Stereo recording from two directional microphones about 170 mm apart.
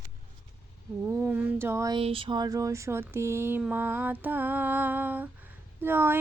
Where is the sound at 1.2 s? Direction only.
10° right (ahead or behind).